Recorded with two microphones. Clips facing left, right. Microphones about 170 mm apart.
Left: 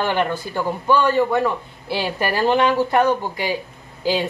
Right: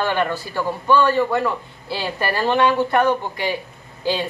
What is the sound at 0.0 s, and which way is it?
Speech, 20° left (ahead or behind).